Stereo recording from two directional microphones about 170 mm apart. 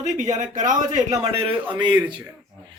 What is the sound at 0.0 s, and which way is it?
Speech, 45° right (ahead or behind).